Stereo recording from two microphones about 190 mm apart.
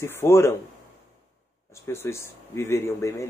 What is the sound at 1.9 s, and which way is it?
Speech, 15° left (ahead or behind).